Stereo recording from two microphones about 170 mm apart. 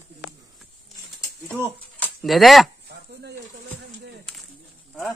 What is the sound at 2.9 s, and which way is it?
Chopping, 75° right (ahead or behind).